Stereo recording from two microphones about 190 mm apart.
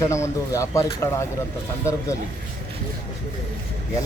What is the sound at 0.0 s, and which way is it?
Speech, 15° left (ahead or behind).